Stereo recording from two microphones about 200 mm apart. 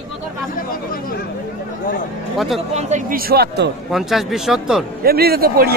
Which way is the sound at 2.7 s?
35° right (ahead or behind).